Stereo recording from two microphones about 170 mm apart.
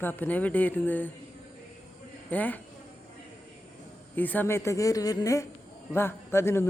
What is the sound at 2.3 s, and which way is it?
Speech, 10° left (ahead or behind).